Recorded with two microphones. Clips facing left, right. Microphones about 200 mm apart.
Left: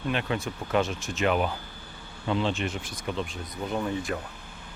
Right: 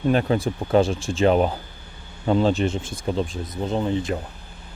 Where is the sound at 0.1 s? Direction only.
35° right (ahead or behind).